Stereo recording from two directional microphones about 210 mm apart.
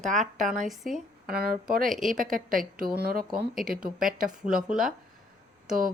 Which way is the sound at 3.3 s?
Centre (ahead or behind).